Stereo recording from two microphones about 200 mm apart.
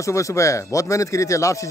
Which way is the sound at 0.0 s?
15° left (ahead or behind).